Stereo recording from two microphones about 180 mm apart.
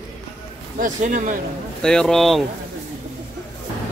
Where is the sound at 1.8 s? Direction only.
5° left (ahead or behind).